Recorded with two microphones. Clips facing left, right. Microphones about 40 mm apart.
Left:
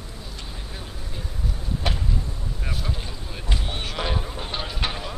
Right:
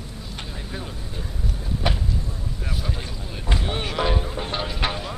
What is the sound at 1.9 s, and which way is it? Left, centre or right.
Vehicle, centre.